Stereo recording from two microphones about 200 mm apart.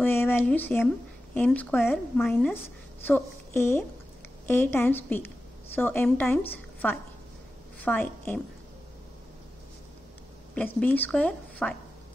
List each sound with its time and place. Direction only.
0.0 s a sound: 10° left (ahead or behind)
1.3 s a woman's voice: 10° left (ahead or behind)
10.5 s a woman's voice: 5° left (ahead or behind)